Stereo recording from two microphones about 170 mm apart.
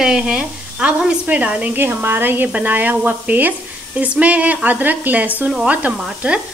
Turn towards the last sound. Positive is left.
turn(degrees=-10)  # may be behind; listen again after turning